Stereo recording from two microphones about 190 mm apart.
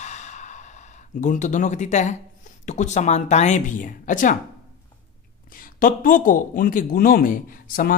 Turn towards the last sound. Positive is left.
turn(degrees=45)  # may be behind; listen again after turning